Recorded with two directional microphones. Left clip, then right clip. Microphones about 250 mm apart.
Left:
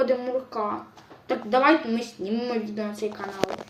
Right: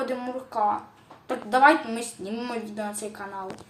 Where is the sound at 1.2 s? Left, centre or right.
Centre.